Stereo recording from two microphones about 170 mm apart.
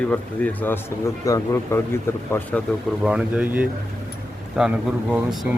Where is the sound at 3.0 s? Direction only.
5° right (ahead or behind).